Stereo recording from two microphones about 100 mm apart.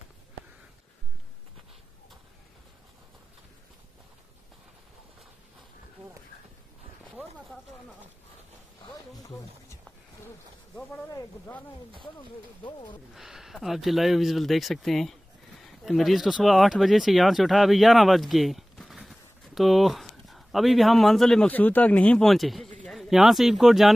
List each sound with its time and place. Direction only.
9.1 s music: 35° left (ahead or behind)
12.0 s speech: 55° left (ahead or behind)
13.1 s speech: 5° right (ahead or behind)
21.5 s speech: 15° left (ahead or behind)
22.2 s speech: centre (ahead or behind)